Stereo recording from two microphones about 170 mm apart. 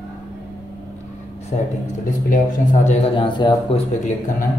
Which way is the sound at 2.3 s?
50° left (ahead or behind).